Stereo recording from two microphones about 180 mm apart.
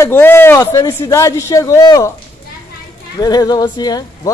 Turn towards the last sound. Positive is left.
turn(degrees=25)  # may be behind; listen again after turning